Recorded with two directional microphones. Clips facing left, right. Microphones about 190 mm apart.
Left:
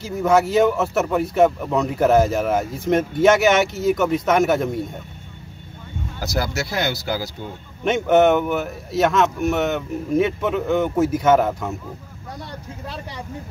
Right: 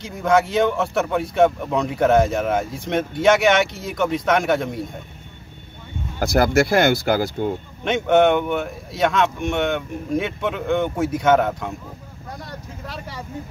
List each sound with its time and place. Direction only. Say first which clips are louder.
0.0 s speech: left 1 dB; 5° left (ahead or behind)
6.1 s speech: right 8 dB; 55° right (ahead or behind)
7.8 s speech: left 1 dB; 5° left (ahead or behind)